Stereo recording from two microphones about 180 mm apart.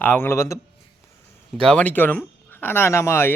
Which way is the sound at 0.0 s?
10° left (ahead or behind).